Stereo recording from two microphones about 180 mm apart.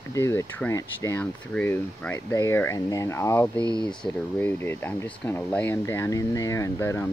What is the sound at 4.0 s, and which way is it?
Speech, 10° left (ahead or behind).